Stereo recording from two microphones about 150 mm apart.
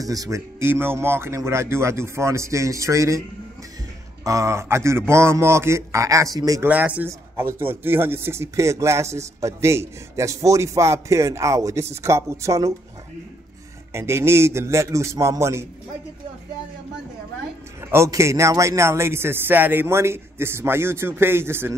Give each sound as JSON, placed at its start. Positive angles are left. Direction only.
{"t": 0.0, "sound": "speech", "side_deg": -25}
{"t": 4.2, "sound": "speech", "side_deg": -20}
{"t": 6.7, "sound": "speech", "side_deg": -10}
{"t": 13.9, "sound": "speech", "side_deg": -15}
{"t": 17.9, "sound": "a man's voice", "side_deg": -20}